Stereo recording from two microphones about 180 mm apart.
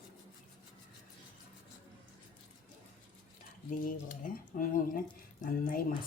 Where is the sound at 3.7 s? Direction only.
50° left (ahead or behind).